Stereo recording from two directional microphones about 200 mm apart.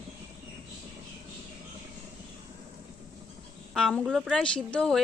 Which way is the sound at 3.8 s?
5° left (ahead or behind).